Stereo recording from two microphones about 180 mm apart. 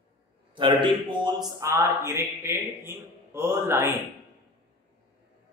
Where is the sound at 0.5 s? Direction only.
25° right (ahead or behind).